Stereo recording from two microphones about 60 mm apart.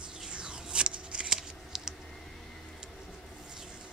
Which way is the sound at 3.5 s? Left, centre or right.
Centre.